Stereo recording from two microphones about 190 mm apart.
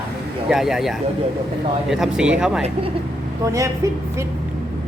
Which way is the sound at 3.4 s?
15° right (ahead or behind).